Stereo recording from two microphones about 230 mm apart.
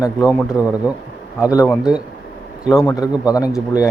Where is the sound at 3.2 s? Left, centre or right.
Centre.